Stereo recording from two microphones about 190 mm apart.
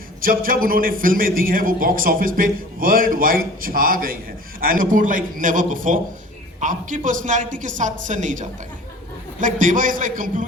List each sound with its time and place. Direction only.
0.2 s a man's voice: 50° right (ahead or behind)